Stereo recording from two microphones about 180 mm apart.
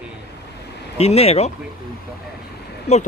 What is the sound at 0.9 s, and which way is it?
Speech, 35° left (ahead or behind).